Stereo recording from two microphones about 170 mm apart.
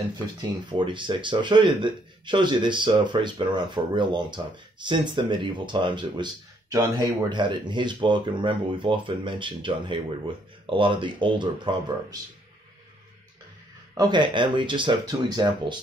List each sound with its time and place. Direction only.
0.4 s speech: 25° right (ahead or behind)
13.9 s speech: 25° right (ahead or behind)